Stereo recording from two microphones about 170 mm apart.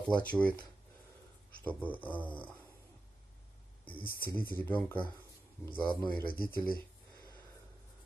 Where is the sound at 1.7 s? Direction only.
10° left (ahead or behind).